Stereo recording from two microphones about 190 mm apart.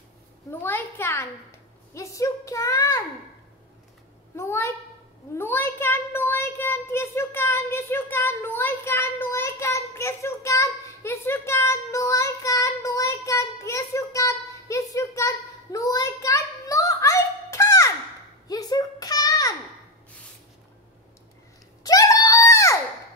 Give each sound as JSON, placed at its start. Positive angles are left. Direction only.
{"t": 0.5, "sound": "a woman's voice", "side_deg": 10}
{"t": 4.4, "sound": "a woman's voice", "side_deg": 15}
{"t": 18.5, "sound": "a sound", "side_deg": 20}
{"t": 21.8, "sound": "screaming", "side_deg": 20}